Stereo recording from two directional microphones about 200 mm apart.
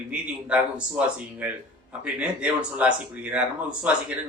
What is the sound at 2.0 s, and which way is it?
Speech, 5° right (ahead or behind).